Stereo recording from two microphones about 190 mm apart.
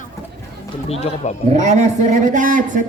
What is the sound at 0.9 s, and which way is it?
Speech, 35° left (ahead or behind).